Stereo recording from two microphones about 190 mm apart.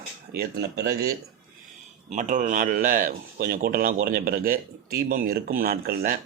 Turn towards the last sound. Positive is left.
turn(degrees=-55)  # may be behind; listen again after turning